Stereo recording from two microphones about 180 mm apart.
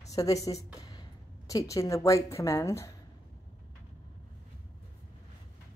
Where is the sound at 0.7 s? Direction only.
20° left (ahead or behind).